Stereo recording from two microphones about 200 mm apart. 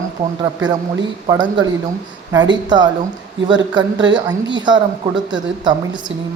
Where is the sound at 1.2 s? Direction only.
20° right (ahead or behind).